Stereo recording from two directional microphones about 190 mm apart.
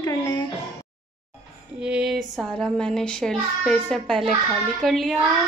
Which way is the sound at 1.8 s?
5° right (ahead or behind).